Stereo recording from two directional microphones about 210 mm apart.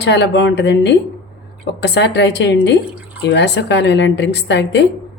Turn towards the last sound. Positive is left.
turn(degrees=55)  # may be behind; listen again after turning